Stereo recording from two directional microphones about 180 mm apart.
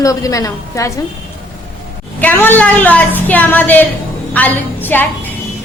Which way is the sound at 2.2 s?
10° left (ahead or behind).